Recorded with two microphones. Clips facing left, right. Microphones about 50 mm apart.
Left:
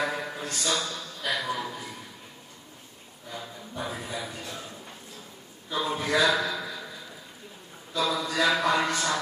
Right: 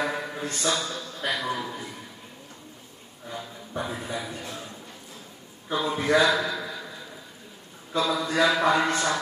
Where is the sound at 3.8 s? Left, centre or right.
Centre.